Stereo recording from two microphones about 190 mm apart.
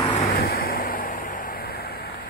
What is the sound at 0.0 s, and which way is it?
Vehicle, 25° left (ahead or behind).